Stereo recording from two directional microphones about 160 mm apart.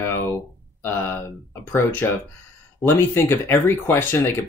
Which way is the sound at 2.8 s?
15° left (ahead or behind).